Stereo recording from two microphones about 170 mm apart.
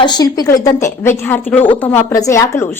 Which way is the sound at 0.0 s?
25° left (ahead or behind).